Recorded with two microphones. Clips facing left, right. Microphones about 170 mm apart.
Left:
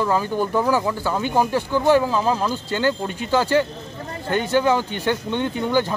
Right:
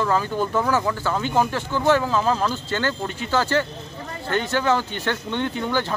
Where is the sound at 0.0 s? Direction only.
15° left (ahead or behind).